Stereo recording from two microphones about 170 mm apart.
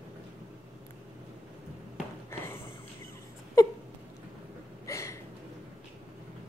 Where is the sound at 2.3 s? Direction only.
15° left (ahead or behind).